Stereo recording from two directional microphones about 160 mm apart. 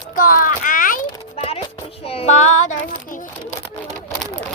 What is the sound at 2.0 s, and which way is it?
Child singing, 40° left (ahead or behind).